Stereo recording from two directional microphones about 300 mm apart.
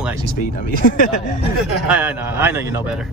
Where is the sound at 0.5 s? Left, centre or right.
Left.